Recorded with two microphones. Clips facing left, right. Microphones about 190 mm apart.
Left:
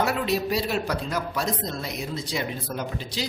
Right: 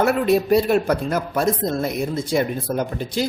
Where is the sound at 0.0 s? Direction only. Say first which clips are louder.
Right 7 dB; 55° right (ahead or behind).